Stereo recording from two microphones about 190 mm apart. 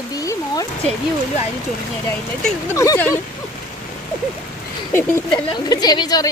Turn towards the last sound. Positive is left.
turn(degrees=20)  # may be behind; listen again after turning